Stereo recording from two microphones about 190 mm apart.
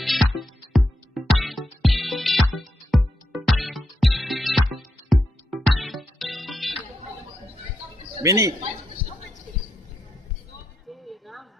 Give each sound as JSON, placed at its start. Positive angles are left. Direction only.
{"t": 0.0, "sound": "music", "side_deg": 0}
{"t": 8.2, "sound": "speech", "side_deg": -15}
{"t": 10.8, "sound": "a sound", "side_deg": 0}